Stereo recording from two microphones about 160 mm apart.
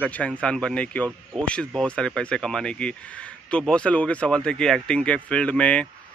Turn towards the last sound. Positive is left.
turn(degrees=5)  # may be behind; listen again after turning